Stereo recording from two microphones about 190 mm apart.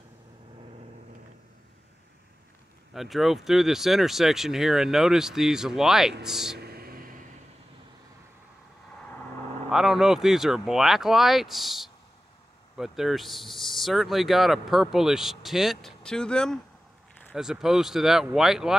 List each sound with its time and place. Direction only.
2.9 s speech: centre (ahead or behind)
6.6 s a sound: 55° right (ahead or behind)
9.7 s speech: centre (ahead or behind)